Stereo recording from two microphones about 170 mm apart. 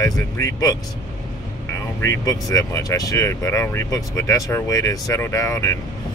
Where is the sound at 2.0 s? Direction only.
20° left (ahead or behind).